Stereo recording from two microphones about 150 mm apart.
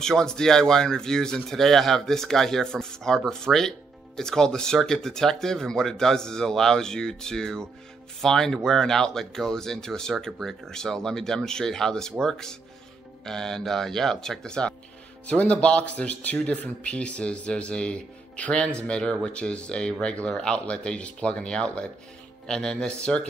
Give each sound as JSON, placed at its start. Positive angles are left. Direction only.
{"t": 0.0, "sound": "speech", "side_deg": 5}